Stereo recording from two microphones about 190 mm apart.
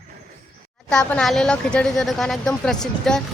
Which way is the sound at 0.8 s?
5° left (ahead or behind).